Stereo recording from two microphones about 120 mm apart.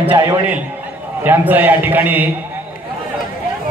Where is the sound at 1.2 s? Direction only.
15° right (ahead or behind).